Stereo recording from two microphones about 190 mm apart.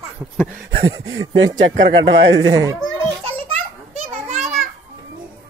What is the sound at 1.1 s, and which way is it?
Speech, 75° right (ahead or behind).